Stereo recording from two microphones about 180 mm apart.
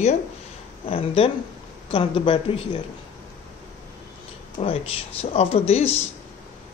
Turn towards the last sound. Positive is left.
turn(degrees=35)  # may be behind; listen again after turning